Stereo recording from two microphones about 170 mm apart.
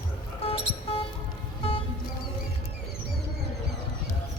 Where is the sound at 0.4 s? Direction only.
35° left (ahead or behind).